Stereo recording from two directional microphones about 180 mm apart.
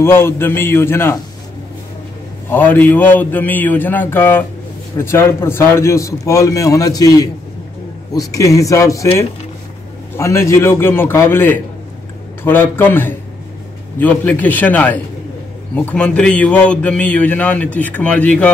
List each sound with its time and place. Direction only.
0.0 s speech: 15° left (ahead or behind)
2.5 s speech: 10° left (ahead or behind)